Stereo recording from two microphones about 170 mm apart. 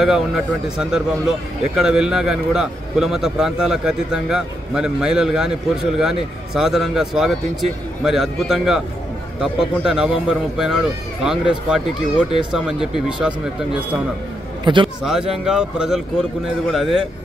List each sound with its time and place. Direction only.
0.0 s a man's voice: 5° right (ahead or behind)
14.6 s a sound: 30° right (ahead or behind)
15.0 s a man's voice: 5° right (ahead or behind)